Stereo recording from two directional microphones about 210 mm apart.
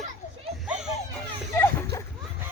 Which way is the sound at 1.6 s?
10° left (ahead or behind).